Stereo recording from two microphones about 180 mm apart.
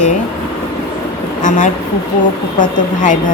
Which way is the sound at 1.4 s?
45° left (ahead or behind).